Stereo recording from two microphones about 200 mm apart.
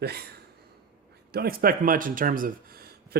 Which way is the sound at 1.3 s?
50° right (ahead or behind).